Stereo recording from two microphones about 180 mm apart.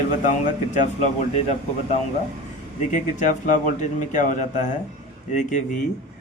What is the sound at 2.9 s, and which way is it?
Speech, 45° left (ahead or behind).